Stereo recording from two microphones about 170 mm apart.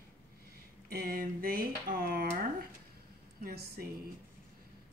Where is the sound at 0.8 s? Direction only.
60° right (ahead or behind).